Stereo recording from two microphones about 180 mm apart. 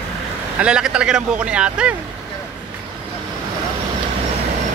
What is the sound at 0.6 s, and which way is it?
Speech, 5° right (ahead or behind).